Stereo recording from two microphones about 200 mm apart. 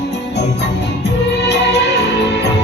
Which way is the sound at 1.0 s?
55° left (ahead or behind).